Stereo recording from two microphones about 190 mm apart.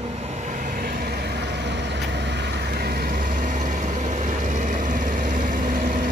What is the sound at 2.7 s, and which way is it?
Vehicle, 55° right (ahead or behind).